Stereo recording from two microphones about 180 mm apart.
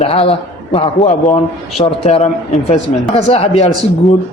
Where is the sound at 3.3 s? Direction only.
35° left (ahead or behind).